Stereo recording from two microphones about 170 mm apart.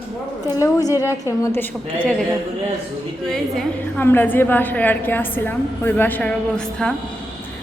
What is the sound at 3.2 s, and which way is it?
A woman's voice, 5° left (ahead or behind).